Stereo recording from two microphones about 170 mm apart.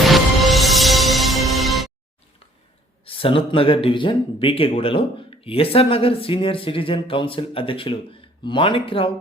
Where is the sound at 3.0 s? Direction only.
30° left (ahead or behind).